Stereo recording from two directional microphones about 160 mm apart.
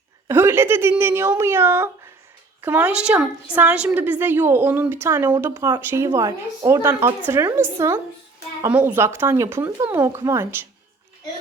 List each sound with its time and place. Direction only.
0.3 s a woman's voice: 15° right (ahead or behind)